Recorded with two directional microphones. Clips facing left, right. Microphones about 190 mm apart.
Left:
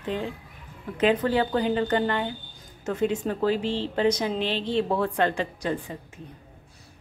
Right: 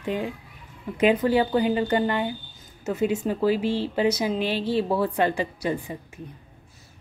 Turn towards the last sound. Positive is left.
turn(degrees=-10)  # may be behind; listen again after turning